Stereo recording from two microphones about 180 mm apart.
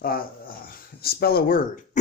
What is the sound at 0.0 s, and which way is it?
Speech, 55° left (ahead or behind).